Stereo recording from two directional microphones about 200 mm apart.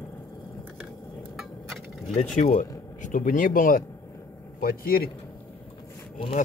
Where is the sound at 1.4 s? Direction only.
Centre (ahead or behind).